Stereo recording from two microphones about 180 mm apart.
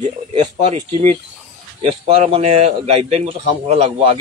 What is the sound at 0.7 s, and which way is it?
A man's voice, 35° right (ahead or behind).